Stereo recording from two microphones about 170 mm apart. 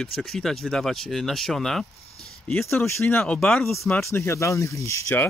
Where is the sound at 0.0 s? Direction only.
5° left (ahead or behind).